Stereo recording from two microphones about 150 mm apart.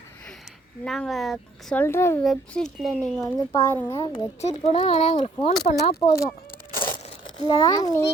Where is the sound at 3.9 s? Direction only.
40° left (ahead or behind).